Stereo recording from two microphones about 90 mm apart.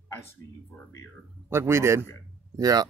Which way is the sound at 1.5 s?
30° right (ahead or behind).